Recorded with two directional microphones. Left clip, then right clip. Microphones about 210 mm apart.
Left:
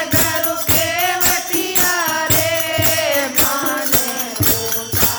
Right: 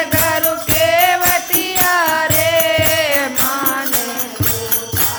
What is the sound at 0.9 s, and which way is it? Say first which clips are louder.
Music: right 9 dB; 25° right (ahead or behind).